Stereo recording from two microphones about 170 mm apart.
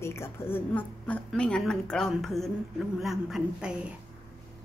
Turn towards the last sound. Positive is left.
turn(degrees=-5)  # may be behind; listen again after turning